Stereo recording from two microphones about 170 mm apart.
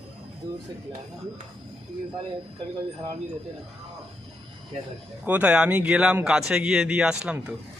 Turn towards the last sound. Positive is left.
turn(degrees=-5)  # may be behind; listen again after turning